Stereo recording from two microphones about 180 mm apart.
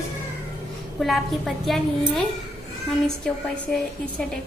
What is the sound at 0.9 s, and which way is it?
A woman's voice, centre (ahead or behind).